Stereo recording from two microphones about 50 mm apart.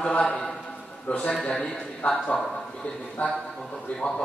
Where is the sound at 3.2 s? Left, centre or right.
Left.